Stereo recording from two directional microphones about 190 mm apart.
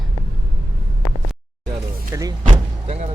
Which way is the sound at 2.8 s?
35° right (ahead or behind).